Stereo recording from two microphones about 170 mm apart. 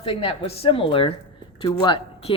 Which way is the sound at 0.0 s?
35° left (ahead or behind).